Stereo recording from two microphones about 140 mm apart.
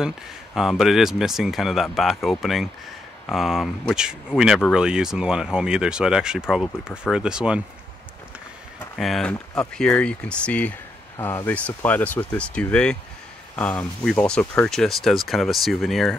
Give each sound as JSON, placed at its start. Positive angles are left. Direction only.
{"t": 0.6, "sound": "speech", "side_deg": 0}
{"t": 8.9, "sound": "speech", "side_deg": 0}
{"t": 14.7, "sound": "speech", "side_deg": 0}